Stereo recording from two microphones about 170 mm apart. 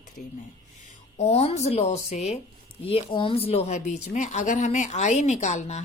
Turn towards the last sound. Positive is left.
turn(degrees=40)  # may be behind; listen again after turning